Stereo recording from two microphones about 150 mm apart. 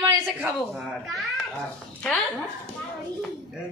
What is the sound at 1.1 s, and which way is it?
Babbling, centre (ahead or behind).